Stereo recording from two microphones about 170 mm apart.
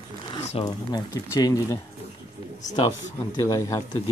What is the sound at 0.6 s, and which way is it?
Speech, 20° left (ahead or behind).